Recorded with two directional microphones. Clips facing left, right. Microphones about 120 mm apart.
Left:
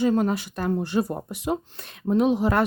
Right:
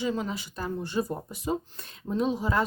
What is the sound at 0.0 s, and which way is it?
Speech, 55° left (ahead or behind).